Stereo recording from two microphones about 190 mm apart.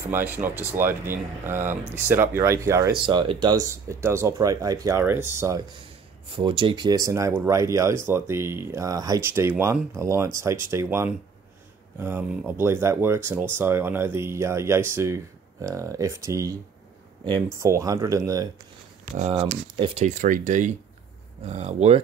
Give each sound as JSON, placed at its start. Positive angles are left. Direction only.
{"t": 0.1, "sound": "speech", "side_deg": -10}
{"t": 6.2, "sound": "speech", "side_deg": -25}
{"t": 17.6, "sound": "speech", "side_deg": -15}
{"t": 19.1, "sound": "speech", "side_deg": -30}